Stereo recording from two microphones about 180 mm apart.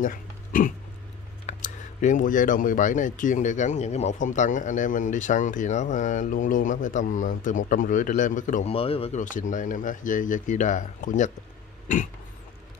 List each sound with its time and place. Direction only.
0.0 s speech: 50° left (ahead or behind); by 9.2 s 30° left (ahead or behind)
9.2 s speech: 45° left (ahead or behind)